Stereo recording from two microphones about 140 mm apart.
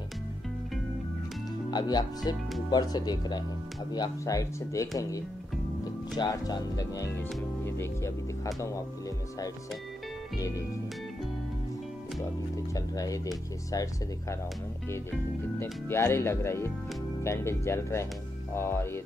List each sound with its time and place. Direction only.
1.7 s speech: 30° left (ahead or behind)
12.7 s speech: 25° left (ahead or behind)
15.6 s speech: 15° left (ahead or behind)